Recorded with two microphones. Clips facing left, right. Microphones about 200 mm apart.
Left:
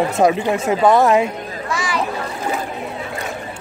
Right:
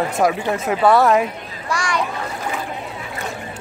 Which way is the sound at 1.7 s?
5° left (ahead or behind).